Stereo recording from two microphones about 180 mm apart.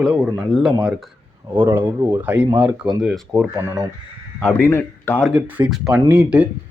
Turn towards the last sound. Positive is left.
turn(degrees=-10)  # may be behind; listen again after turning